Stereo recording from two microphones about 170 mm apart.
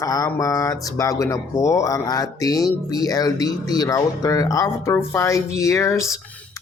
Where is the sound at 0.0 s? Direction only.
20° left (ahead or behind).